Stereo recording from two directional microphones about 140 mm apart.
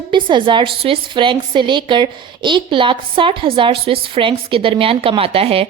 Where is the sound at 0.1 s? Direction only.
35° right (ahead or behind).